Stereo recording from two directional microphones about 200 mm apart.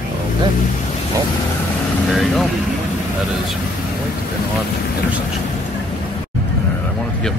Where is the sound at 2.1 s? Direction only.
Centre (ahead or behind).